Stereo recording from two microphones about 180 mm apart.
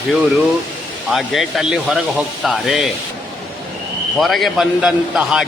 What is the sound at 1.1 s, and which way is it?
A man's voice, centre (ahead or behind).